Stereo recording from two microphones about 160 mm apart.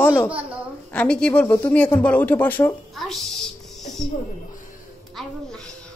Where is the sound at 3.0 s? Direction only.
Centre (ahead or behind).